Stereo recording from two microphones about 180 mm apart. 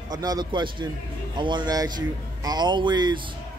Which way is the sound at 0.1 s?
20° right (ahead or behind).